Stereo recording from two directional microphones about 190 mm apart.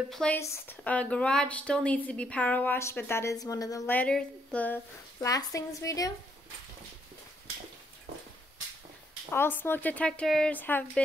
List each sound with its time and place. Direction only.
0.1 s speech: 5° left (ahead or behind)
5.2 s speech: 15° left (ahead or behind)
9.3 s speech: 10° left (ahead or behind)